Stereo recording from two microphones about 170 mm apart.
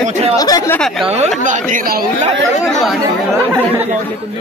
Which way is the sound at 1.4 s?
50° right (ahead or behind).